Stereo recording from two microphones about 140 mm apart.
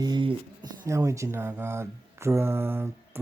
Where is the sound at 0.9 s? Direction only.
20° right (ahead or behind).